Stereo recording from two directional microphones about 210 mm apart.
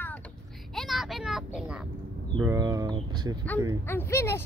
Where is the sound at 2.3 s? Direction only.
15° right (ahead or behind).